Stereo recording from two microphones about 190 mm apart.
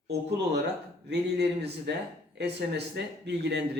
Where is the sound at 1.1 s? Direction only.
60° right (ahead or behind).